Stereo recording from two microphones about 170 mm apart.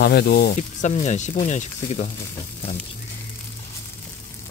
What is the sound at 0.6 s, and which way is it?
Speech, 45° left (ahead or behind).